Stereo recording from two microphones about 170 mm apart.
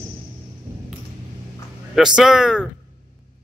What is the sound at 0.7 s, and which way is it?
Ping, 15° right (ahead or behind).